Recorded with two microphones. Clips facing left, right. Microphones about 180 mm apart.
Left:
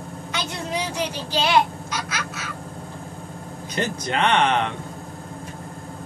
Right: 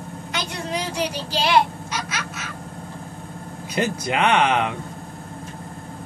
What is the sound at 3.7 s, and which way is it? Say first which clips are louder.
Speech: right 2 dB; 10° right (ahead or behind).